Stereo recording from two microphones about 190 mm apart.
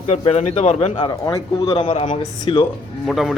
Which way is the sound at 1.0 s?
20° left (ahead or behind).